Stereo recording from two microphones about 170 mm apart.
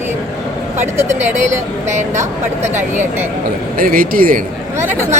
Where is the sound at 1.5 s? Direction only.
45° right (ahead or behind).